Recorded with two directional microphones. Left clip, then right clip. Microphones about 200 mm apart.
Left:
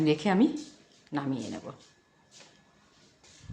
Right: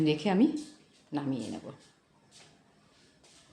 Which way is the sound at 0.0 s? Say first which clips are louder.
Left 2 dB; 5° left (ahead or behind).